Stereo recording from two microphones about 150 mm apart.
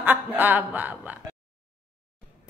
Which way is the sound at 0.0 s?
10° right (ahead or behind).